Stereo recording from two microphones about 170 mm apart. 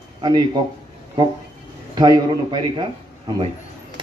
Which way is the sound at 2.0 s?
25° right (ahead or behind).